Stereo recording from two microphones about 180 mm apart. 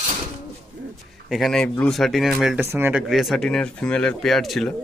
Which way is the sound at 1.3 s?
Centre (ahead or behind).